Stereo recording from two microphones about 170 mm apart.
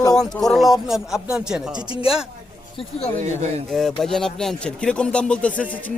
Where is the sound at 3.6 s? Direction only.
Centre (ahead or behind).